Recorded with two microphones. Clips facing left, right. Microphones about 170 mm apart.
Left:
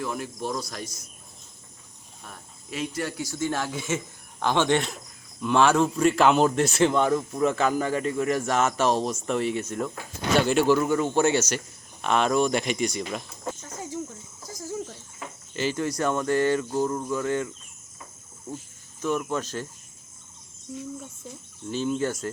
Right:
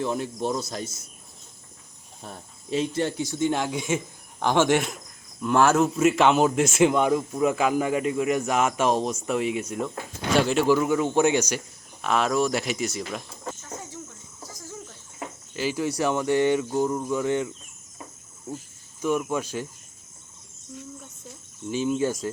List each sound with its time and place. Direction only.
0.0 s speech: 25° right (ahead or behind)
2.2 s speech: 30° right (ahead or behind); by 11.1 s 5° right (ahead or behind)
11.1 s speech: 15° right (ahead or behind)
15.5 s speech: 5° right (ahead or behind)
19.0 s speech: 10° right (ahead or behind)
20.7 s cricket: 5° left (ahead or behind)
21.7 s speech: 10° right (ahead or behind)